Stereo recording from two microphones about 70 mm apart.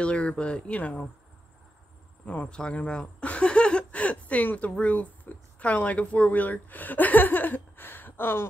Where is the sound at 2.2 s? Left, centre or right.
Left.